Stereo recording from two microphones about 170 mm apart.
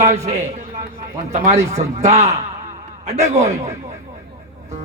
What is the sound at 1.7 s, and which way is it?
A man's voice, 40° right (ahead or behind).